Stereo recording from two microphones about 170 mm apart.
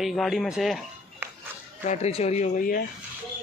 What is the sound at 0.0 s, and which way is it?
Speech, centre (ahead or behind).